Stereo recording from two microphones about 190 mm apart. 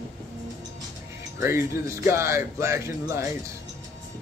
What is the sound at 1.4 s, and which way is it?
Speech, 15° right (ahead or behind).